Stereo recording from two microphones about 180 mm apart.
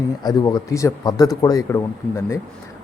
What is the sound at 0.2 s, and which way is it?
Speech, 20° left (ahead or behind).